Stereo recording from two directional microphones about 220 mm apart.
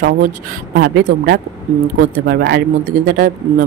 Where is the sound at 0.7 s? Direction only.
45° right (ahead or behind).